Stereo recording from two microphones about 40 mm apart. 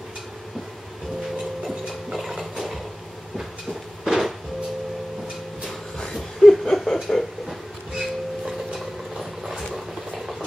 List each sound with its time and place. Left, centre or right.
2.0 s ratchet: centre
4.0 s music: centre
6.0 s a sound: centre
8.5 s train: centre
9.8 s vehicle: centre